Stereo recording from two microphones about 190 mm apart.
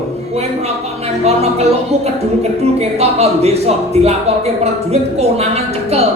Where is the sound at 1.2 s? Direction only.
35° right (ahead or behind).